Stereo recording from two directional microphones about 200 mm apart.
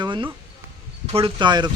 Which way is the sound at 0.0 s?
25° right (ahead or behind).